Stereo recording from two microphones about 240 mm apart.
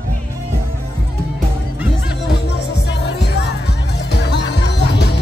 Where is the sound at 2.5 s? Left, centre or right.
Left.